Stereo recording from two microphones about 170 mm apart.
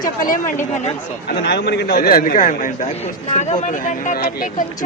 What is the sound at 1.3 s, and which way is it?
Speech, 75° left (ahead or behind).